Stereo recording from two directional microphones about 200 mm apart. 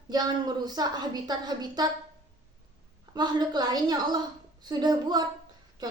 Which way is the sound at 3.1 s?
20° right (ahead or behind).